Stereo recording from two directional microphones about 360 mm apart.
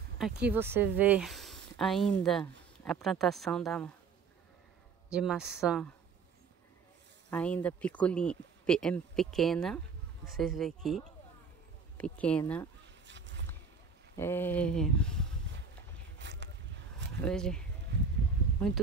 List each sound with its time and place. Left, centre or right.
0.2 s speech: centre
5.1 s speech: centre
7.2 s speech: centre
13.0 s a sound: right
14.1 s speech: centre
16.2 s boat: right
17.2 s speech: centre